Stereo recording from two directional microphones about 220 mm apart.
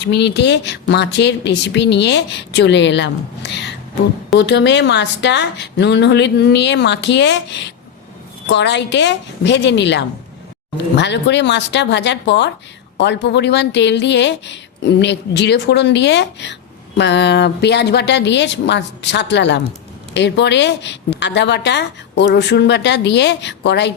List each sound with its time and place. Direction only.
0.0 s a woman's voice: 50° left (ahead or behind)